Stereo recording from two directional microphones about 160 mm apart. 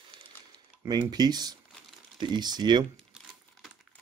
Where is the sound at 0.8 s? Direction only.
25° right (ahead or behind).